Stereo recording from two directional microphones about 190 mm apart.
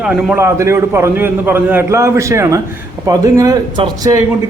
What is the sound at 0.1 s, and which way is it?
A man's voice, 5° right (ahead or behind).